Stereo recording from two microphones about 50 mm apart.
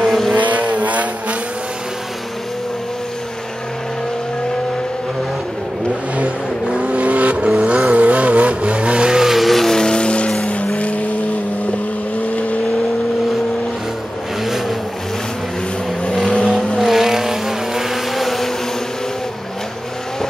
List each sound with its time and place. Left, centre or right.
0.3 s vehicle: right
6.1 s vehicle: right
9.2 s vehicle: centre
9.8 s vehicle: centre
14.4 s vehicle: centre
16.1 s vehicle: centre
16.7 s vehicle: centre